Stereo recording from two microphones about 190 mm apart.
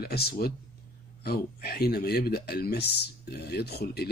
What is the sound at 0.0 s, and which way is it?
Speech, 55° left (ahead or behind).